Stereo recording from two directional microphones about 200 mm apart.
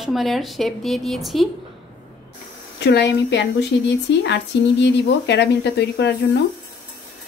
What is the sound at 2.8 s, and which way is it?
Speech, 55° left (ahead or behind).